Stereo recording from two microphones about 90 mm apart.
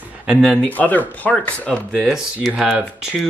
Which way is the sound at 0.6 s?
20° left (ahead or behind).